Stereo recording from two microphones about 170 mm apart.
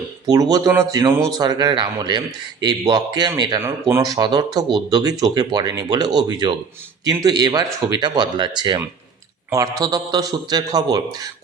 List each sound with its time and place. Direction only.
0.5 s speech: 20° right (ahead or behind)